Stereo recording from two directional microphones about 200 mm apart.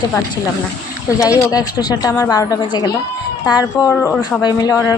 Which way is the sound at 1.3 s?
20° left (ahead or behind).